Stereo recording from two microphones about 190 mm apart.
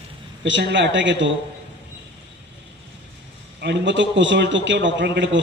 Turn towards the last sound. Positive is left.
turn(degrees=-70)  # may be behind; listen again after turning